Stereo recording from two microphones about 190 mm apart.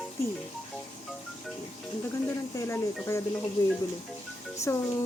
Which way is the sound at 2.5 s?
15° left (ahead or behind).